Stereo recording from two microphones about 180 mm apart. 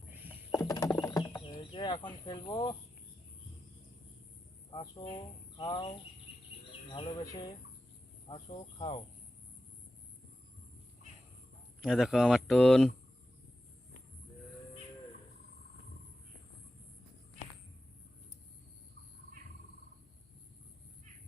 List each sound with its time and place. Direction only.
0.5 s a sound: 20° left (ahead or behind)
4.7 s speech: 25° left (ahead or behind)
11.8 s speech: centre (ahead or behind)